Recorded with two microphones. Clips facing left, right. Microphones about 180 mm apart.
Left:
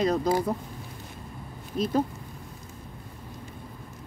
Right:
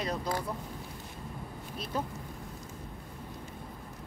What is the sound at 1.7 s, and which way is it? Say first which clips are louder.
Speech: left 10 dB; 90° left.